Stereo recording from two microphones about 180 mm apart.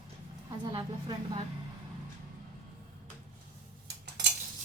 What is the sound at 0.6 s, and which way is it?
Speech, 25° right (ahead or behind).